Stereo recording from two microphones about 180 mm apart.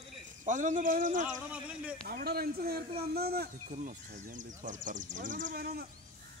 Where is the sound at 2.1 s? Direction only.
55° right (ahead or behind).